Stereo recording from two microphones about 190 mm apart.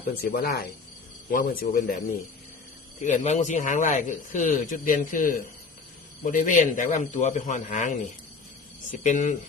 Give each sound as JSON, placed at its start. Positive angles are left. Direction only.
{"t": 0.1, "sound": "a man's voice", "side_deg": 50}